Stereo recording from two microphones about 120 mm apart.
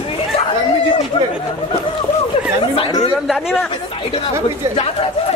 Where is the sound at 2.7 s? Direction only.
50° left (ahead or behind).